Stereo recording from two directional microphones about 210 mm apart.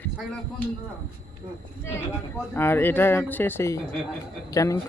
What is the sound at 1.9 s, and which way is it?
Speech, 10° left (ahead or behind).